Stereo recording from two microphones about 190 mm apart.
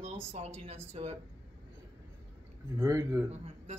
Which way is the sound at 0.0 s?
35° right (ahead or behind).